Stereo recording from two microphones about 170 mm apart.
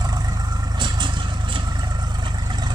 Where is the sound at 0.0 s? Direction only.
25° right (ahead or behind).